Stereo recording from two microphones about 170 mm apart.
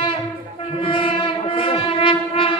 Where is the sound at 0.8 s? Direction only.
30° left (ahead or behind).